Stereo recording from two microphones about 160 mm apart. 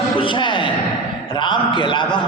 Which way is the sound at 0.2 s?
30° left (ahead or behind).